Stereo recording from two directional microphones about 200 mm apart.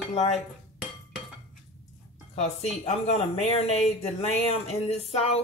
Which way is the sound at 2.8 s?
30° left (ahead or behind).